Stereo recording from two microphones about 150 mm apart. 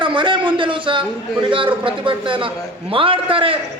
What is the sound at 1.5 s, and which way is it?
A man's voice, 35° right (ahead or behind).